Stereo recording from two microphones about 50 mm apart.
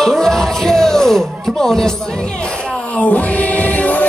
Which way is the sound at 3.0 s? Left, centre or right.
Left.